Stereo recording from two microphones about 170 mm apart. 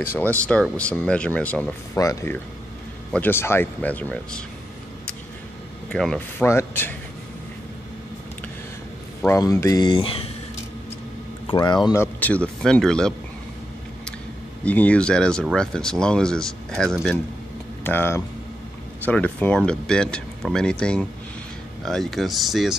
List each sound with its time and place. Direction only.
0.0 s speech: 10° left (ahead or behind)
2.0 s speech: 20° left (ahead or behind)
5.9 s speech: 5° left (ahead or behind)
9.4 s speech: 20° left (ahead or behind)
11.4 s speech: 25° left (ahead or behind)
11.9 s speech: 10° left (ahead or behind)
14.6 s speech: 10° left (ahead or behind)
17.8 s speech: 15° left (ahead or behind)